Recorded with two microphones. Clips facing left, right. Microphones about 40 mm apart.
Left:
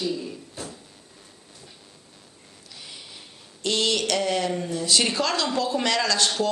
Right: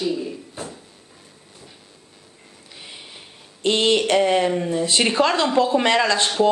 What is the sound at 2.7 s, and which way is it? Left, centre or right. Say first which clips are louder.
Speech: right 3 dB; right.